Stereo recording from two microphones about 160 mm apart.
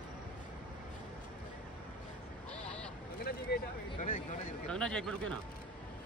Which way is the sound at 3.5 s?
90° left.